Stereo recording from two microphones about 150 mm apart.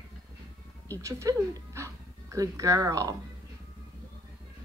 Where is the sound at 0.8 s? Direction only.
20° right (ahead or behind).